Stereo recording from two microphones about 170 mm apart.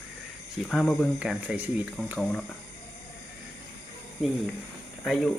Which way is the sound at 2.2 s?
5° left (ahead or behind).